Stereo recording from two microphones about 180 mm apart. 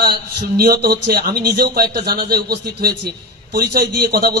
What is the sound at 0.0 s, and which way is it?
A man's voice, 60° right (ahead or behind).